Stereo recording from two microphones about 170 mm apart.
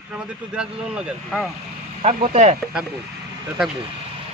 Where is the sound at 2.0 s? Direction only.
40° right (ahead or behind).